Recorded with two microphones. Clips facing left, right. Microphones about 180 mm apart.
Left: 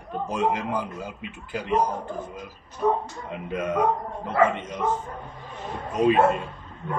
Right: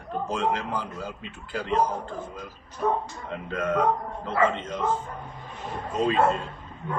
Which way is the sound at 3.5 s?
15° left (ahead or behind).